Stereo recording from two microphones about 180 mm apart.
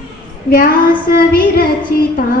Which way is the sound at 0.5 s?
55° left (ahead or behind).